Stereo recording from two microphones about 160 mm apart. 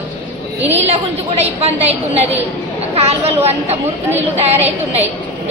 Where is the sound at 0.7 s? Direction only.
40° right (ahead or behind).